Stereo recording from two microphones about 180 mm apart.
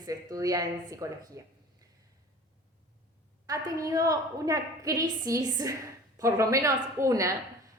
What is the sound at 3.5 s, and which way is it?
A woman's voice, 20° right (ahead or behind).